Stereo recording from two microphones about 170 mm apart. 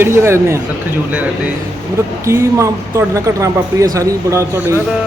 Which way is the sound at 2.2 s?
15° right (ahead or behind).